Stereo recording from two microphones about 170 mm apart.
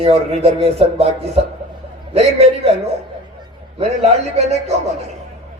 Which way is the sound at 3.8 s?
40° right (ahead or behind).